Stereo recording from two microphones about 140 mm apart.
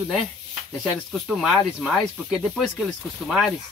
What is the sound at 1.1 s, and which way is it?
Speech, centre (ahead or behind).